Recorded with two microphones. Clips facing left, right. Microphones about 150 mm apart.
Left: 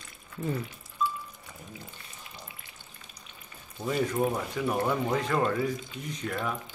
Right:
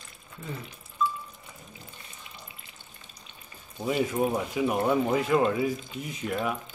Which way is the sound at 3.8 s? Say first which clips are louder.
Right 1 dB; 10° right (ahead or behind).